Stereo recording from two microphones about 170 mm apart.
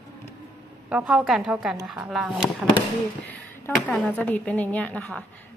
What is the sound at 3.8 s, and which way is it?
Speech, 5° left (ahead or behind).